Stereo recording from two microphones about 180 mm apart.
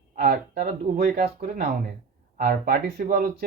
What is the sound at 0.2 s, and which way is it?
Speech, 55° right (ahead or behind).